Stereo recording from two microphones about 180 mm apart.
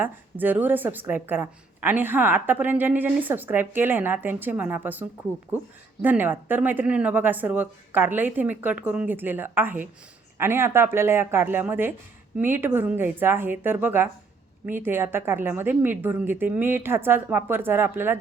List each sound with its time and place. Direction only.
0.0 s speech: 10° right (ahead or behind)